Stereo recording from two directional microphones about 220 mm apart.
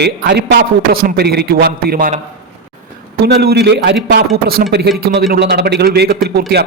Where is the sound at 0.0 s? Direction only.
50° right (ahead or behind).